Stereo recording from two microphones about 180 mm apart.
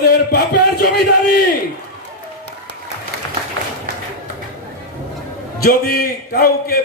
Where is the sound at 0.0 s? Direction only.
65° left (ahead or behind).